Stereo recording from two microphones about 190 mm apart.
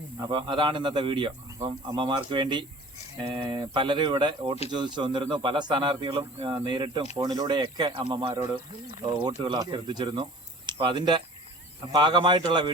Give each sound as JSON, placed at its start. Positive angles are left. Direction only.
{"t": 0.2, "sound": "speech", "side_deg": -25}